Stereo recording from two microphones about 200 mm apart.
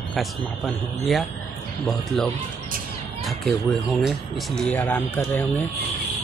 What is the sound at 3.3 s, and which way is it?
Speech, centre (ahead or behind).